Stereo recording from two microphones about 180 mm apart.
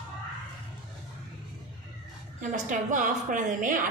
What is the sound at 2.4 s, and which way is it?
A woman's voice, 45° right (ahead or behind).